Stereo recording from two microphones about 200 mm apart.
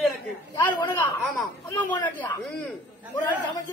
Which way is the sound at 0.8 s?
10° left (ahead or behind).